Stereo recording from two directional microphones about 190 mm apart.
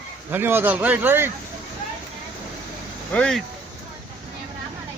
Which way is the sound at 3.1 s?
5° left (ahead or behind).